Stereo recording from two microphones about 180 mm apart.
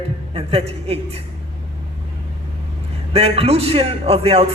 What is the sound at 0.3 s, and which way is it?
Speech, 35° right (ahead or behind).